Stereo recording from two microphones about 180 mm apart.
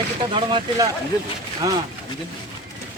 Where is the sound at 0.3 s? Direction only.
25° right (ahead or behind).